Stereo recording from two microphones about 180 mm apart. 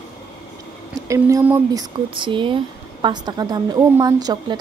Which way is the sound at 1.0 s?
15° right (ahead or behind).